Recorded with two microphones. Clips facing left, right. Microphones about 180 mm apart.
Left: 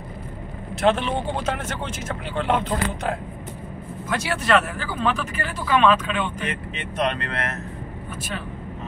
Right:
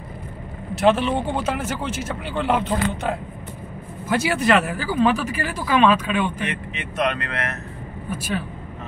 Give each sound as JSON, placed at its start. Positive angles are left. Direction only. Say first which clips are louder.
{"t": 0.7, "sound": "speech", "louder": "right 3 dB", "side_deg": -5}
{"t": 6.5, "sound": "speech", "louder": "right 1 dB", "side_deg": 30}